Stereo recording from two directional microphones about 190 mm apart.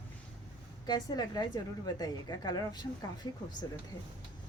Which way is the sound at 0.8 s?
20° left (ahead or behind).